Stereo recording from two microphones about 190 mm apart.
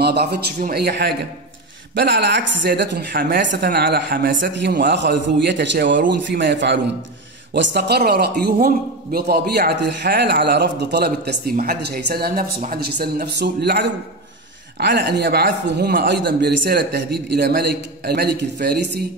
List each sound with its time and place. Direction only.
0.0 s a man's voice: 60° right (ahead or behind)